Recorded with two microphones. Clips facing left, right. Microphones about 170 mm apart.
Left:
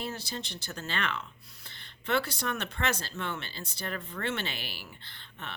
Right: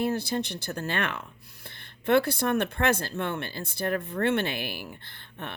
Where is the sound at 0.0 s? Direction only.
55° right (ahead or behind).